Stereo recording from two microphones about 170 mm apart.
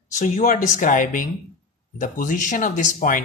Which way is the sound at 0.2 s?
50° left (ahead or behind).